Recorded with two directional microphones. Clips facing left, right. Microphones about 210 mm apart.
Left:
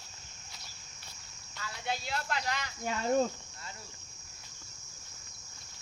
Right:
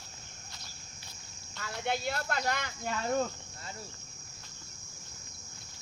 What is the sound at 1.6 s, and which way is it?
Speech, 55° right (ahead or behind).